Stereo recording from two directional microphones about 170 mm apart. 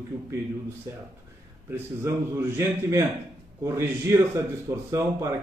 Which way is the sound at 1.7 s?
15° right (ahead or behind).